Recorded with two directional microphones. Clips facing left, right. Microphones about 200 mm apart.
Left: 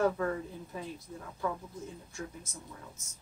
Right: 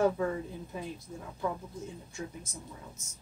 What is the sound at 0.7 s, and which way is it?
Speech, 15° right (ahead or behind).